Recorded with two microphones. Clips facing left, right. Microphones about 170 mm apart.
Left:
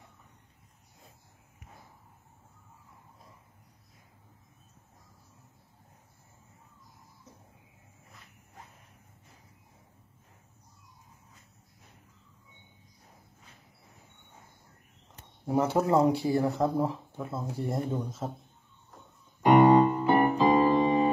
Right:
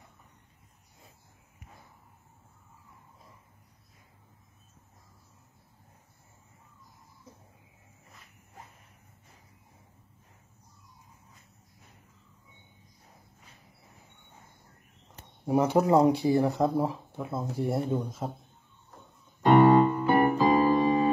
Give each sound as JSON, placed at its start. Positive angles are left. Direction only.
{"t": 15.4, "sound": "speech", "side_deg": -15}
{"t": 19.4, "sound": "piano", "side_deg": 15}